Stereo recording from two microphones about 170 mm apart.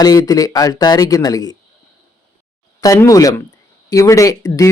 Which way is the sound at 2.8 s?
20° left (ahead or behind).